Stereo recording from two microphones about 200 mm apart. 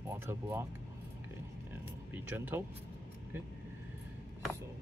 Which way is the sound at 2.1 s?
10° right (ahead or behind).